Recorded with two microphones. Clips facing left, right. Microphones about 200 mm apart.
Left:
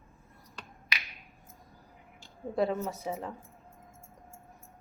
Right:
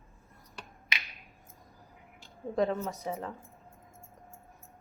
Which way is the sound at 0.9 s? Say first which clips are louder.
Even; 20° right (ahead or behind).